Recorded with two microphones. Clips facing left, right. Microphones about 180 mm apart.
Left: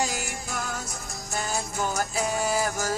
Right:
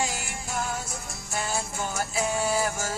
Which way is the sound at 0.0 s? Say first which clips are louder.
Left 2 dB; 40° left (ahead or behind).